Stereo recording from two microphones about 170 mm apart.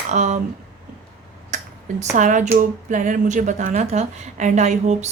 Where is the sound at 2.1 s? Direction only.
45° right (ahead or behind).